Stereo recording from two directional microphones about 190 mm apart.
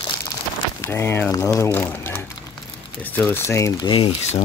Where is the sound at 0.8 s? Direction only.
15° left (ahead or behind).